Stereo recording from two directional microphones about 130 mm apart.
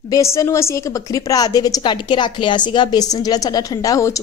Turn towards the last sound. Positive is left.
turn(degrees=25)  # may be behind; listen again after turning